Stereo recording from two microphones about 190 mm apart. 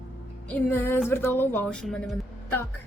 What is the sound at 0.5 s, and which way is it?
A woman's voice, 10° left (ahead or behind).